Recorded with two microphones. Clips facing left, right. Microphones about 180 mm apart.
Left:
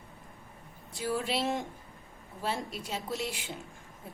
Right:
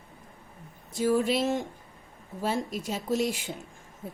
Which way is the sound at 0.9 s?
45° right (ahead or behind).